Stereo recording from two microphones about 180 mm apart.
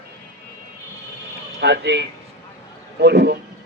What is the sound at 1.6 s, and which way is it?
Speech, 70° right (ahead or behind).